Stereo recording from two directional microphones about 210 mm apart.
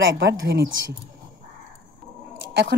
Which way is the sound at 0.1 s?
60° right (ahead or behind).